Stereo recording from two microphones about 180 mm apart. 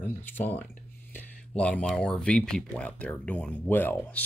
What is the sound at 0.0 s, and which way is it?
Speech, 10° left (ahead or behind).